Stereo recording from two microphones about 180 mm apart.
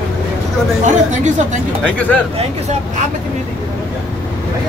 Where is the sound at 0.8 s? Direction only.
40° right (ahead or behind).